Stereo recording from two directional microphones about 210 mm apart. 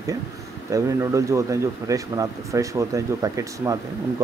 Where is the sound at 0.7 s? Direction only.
15° right (ahead or behind).